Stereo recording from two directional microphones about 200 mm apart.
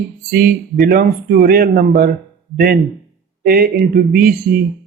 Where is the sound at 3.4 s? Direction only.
50° right (ahead or behind).